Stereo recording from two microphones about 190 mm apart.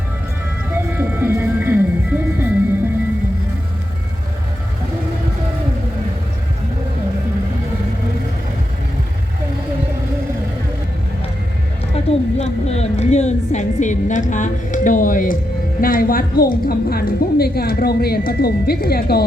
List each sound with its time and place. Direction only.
0.9 s music: 10° right (ahead or behind)
12.0 s a sound: 35° left (ahead or behind)
15.8 s a woman's voice: 50° left (ahead or behind)